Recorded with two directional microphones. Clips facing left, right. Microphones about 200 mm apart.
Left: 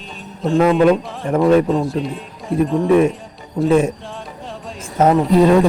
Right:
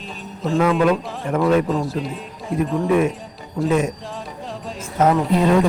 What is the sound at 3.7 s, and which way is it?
Speech, 30° left (ahead or behind).